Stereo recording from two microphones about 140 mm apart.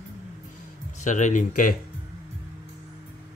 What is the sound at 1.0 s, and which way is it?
Speech, 60° left (ahead or behind).